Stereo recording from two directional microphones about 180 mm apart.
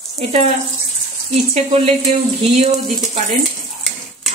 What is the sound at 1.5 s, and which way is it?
Speech, 35° right (ahead or behind).